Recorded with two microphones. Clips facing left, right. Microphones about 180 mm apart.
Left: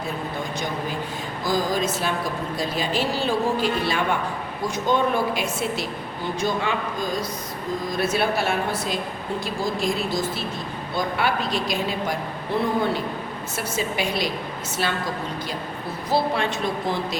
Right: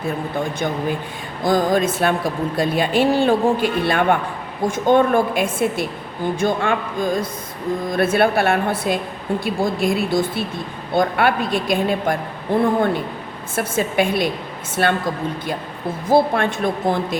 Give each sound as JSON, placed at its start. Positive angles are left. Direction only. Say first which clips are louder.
{"t": 1.5, "sound": "a man's voice", "louder": "right 6 dB", "side_deg": -55}
{"t": 16.0, "sound": "a woman's voice", "louder": "right 7 dB", "side_deg": -50}